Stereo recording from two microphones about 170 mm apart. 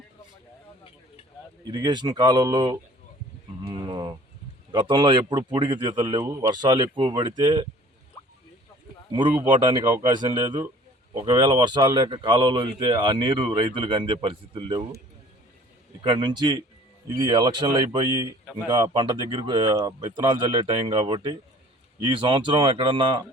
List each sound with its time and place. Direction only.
1.6 s speech: 25° right (ahead or behind)
9.3 s speech: 20° right (ahead or behind)
16.0 s speech: 25° right (ahead or behind)